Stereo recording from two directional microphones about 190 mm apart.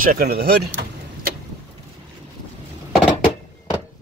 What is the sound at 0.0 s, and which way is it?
Speech, 50° right (ahead or behind).